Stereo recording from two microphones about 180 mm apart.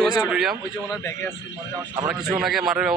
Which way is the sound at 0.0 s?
5° right (ahead or behind).